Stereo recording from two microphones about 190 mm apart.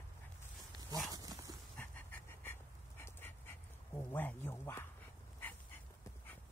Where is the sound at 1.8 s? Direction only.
10° left (ahead or behind).